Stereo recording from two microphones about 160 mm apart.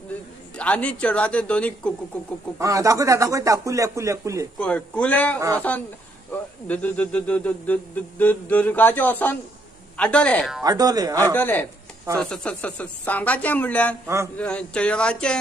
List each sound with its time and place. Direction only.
0.6 s speech: 10° left (ahead or behind)
2.6 s speech: 20° right (ahead or behind)
4.6 s speech: 5° left (ahead or behind)
10.6 s speech: 25° right (ahead or behind)
11.3 s speech: 10° left (ahead or behind)
14.0 s a sound: 15° right (ahead or behind)
14.3 s speech: 5° left (ahead or behind)